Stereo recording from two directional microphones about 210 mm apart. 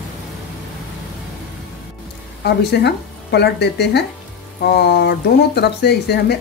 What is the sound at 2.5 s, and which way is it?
Speech, 50° left (ahead or behind).